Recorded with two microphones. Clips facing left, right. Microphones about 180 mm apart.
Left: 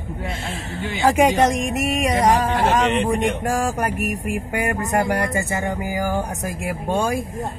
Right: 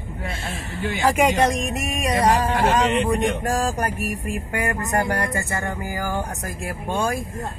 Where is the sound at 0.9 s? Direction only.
15° left (ahead or behind).